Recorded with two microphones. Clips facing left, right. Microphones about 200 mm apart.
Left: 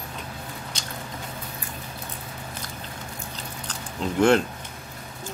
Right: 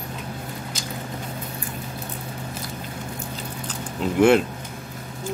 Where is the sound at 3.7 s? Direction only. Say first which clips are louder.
Right 3 dB; 5° right (ahead or behind).